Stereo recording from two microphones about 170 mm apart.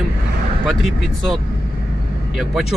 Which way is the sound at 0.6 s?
Centre (ahead or behind).